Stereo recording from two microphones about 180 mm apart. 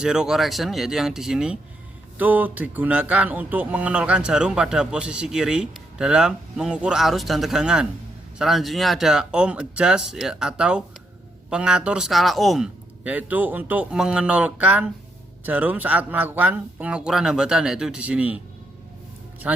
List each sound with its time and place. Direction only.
0.0 s speech: 5° right (ahead or behind)
19.4 s speech: 5° right (ahead or behind)